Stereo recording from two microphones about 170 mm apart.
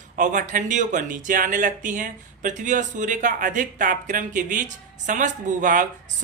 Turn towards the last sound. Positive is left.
turn(degrees=-50)  # may be behind; listen again after turning